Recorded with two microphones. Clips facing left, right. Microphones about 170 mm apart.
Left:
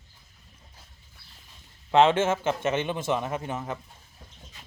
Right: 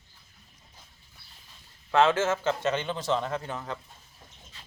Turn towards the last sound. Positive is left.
turn(degrees=20)  # may be behind; listen again after turning